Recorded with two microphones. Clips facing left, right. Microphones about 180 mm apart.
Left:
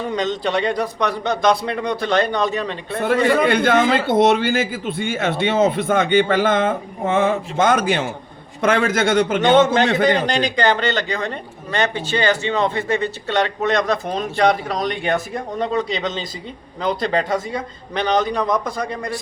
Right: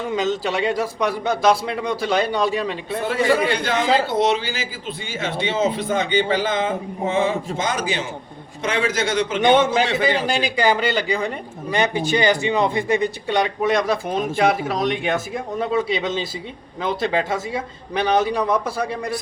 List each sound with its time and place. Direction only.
0.1 s a man's voice: 5° right (ahead or behind)
3.4 s a man's voice: 55° left (ahead or behind)
9.4 s a man's voice: 10° right (ahead or behind)